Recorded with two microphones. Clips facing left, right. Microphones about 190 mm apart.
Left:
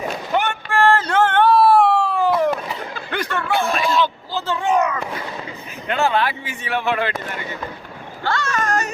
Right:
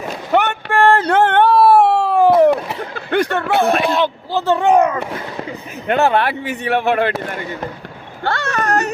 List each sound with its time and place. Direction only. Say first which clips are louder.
0.3 s a sound: right 5 dB; 60° right (ahead or behind)
5.9 s speech: right 4 dB; 60° right (ahead or behind)
8.2 s speech: right 2 dB; 60° right (ahead or behind)